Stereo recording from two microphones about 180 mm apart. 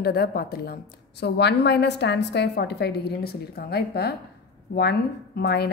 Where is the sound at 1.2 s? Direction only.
70° left (ahead or behind).